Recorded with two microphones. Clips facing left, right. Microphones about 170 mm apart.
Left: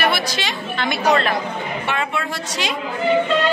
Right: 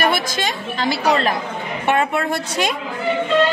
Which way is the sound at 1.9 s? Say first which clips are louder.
Right 8 dB; 50° right (ahead or behind).